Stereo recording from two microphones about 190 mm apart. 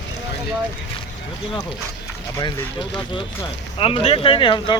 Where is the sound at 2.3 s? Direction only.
25° left (ahead or behind).